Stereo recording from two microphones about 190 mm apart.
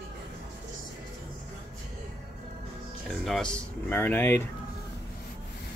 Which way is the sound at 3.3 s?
5° left (ahead or behind).